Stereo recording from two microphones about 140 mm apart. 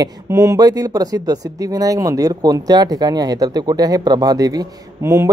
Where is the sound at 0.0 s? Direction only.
25° right (ahead or behind).